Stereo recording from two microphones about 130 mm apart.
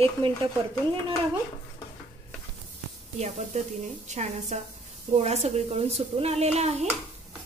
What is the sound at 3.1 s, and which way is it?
A child's voice, 60° right (ahead or behind).